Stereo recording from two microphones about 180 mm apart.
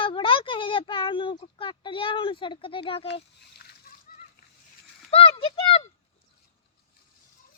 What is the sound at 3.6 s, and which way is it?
Splash, 55° left (ahead or behind).